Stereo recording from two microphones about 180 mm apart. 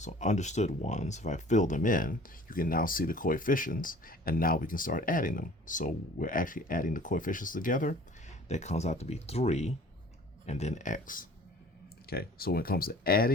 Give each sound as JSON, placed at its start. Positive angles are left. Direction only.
{"t": 0.0, "sound": "speech", "side_deg": 40}